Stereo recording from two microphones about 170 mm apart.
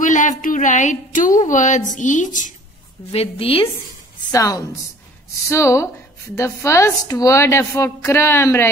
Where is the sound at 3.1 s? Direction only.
35° left (ahead or behind).